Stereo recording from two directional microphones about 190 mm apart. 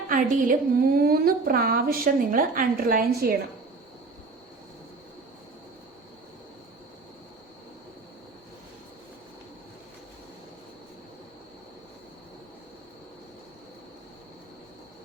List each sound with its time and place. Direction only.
0.1 s a woman's voice: 45° right (ahead or behind)